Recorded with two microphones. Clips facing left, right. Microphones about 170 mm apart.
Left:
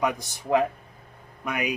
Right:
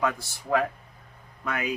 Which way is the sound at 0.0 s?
20° left (ahead or behind).